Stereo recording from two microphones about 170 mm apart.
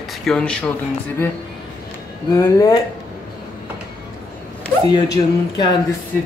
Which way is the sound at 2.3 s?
20° left (ahead or behind).